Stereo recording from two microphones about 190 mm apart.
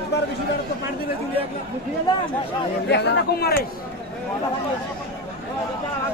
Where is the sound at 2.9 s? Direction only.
60° left (ahead or behind).